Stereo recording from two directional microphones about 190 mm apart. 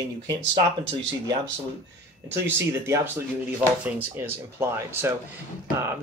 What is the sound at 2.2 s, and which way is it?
Speech, 10° right (ahead or behind).